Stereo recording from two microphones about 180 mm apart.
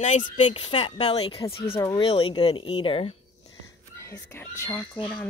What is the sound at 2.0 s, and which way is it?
Speech, 30° left (ahead or behind).